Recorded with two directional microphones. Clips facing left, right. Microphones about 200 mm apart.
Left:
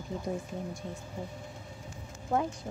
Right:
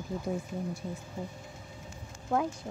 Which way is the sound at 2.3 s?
Centre (ahead or behind).